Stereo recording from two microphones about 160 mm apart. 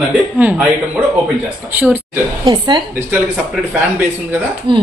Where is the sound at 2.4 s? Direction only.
30° right (ahead or behind).